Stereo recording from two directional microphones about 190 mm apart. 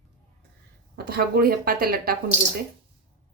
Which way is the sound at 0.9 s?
55° right (ahead or behind).